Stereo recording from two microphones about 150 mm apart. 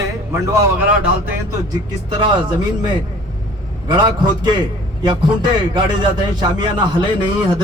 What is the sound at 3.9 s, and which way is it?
Speech, 30° right (ahead or behind).